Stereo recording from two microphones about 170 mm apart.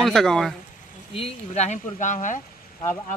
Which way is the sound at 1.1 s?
35° left (ahead or behind).